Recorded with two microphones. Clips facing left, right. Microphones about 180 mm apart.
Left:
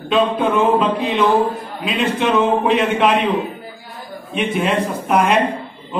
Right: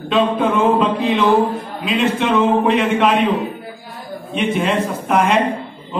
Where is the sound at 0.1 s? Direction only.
Centre (ahead or behind).